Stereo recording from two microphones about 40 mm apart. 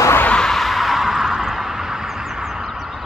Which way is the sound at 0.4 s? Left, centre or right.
Centre.